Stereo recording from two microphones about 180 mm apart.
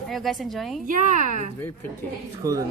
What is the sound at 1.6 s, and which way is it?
Speech, 10° left (ahead or behind).